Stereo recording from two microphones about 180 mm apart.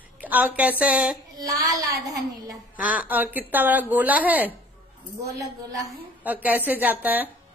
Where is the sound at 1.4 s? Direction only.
20° right (ahead or behind).